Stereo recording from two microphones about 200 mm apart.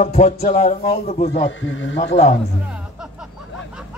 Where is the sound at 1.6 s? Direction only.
70° left (ahead or behind).